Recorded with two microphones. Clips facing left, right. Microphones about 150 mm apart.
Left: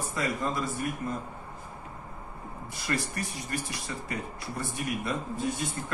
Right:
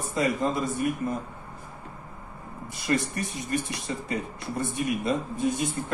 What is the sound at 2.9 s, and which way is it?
Speech, 20° right (ahead or behind).